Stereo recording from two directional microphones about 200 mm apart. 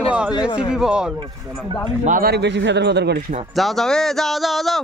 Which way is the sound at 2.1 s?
50° right (ahead or behind).